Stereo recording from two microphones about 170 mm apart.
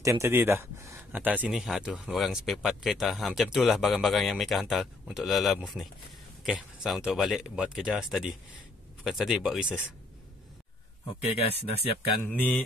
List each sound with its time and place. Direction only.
0.0 s speech: 15° right (ahead or behind)
11.3 s speech: 35° left (ahead or behind)
12.3 s mantra: 10° left (ahead or behind)